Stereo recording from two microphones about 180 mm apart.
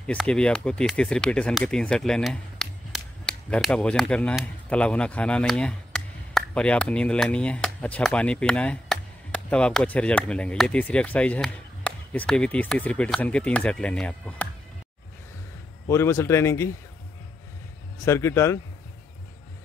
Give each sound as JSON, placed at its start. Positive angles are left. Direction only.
{"t": 0.0, "sound": "speech", "side_deg": 5}
{"t": 15.9, "sound": "speech", "side_deg": 15}
{"t": 18.0, "sound": "speech", "side_deg": 15}